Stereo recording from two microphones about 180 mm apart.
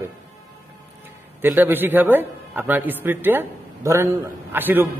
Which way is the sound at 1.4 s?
10° right (ahead or behind).